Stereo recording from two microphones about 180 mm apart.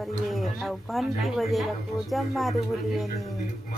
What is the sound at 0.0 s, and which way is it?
A woman's voice, centre (ahead or behind).